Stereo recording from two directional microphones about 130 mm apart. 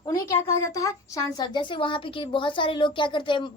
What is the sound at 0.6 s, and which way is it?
A woman's voice, 25° left (ahead or behind).